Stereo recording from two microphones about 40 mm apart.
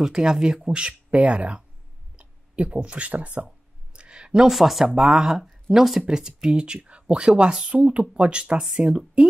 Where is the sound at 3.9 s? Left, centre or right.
Right.